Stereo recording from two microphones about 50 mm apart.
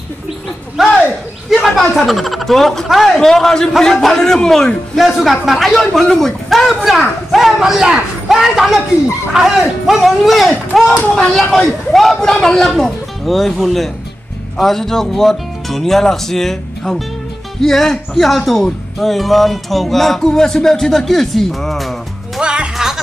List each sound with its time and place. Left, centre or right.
0.8 s speech: centre
4.9 s speech: centre
11.1 s speech: centre
22.4 s speech: centre